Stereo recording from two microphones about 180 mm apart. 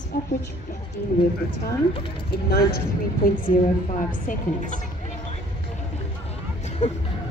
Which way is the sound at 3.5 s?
45° left (ahead or behind).